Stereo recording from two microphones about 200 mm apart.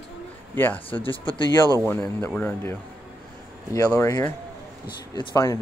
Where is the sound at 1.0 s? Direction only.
25° left (ahead or behind).